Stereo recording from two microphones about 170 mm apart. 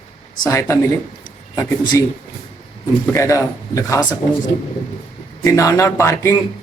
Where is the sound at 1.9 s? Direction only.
20° left (ahead or behind).